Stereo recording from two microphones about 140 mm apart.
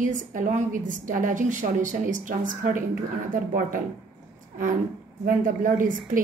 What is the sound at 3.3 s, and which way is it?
Speech, 80° right.